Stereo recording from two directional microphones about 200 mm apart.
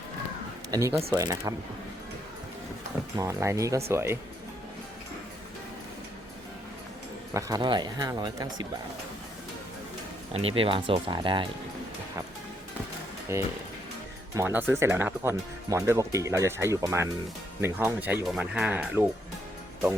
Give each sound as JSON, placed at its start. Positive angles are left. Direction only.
{"t": 0.7, "sound": "speech", "side_deg": -15}
{"t": 3.2, "sound": "speech", "side_deg": -15}
{"t": 7.3, "sound": "speech", "side_deg": -15}
{"t": 10.3, "sound": "speech", "side_deg": -30}
{"t": 13.3, "sound": "speech", "side_deg": -15}